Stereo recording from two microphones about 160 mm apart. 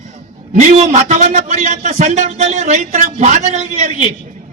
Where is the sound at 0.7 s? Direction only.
45° right (ahead or behind).